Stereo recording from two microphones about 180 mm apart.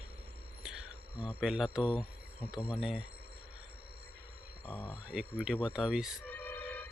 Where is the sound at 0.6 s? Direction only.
5° right (ahead or behind).